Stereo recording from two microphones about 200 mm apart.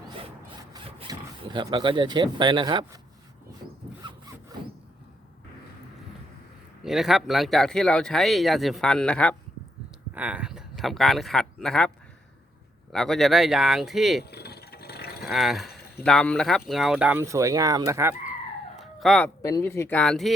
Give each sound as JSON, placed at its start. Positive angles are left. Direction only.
{"t": 0.7, "sound": "speech", "side_deg": -25}
{"t": 4.0, "sound": "zipper", "side_deg": -25}
{"t": 6.8, "sound": "speech", "side_deg": 0}
{"t": 10.2, "sound": "a man's voice", "side_deg": -5}
{"t": 12.9, "sound": "speech", "side_deg": 0}
{"t": 14.3, "sound": "a sound", "side_deg": 55}
{"t": 15.2, "sound": "speech", "side_deg": 0}
{"t": 18.8, "sound": "howl", "side_deg": 0}
{"t": 19.4, "sound": "speech", "side_deg": 15}